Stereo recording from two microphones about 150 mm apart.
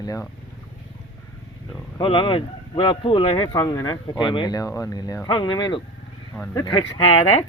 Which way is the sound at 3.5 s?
20° left (ahead or behind).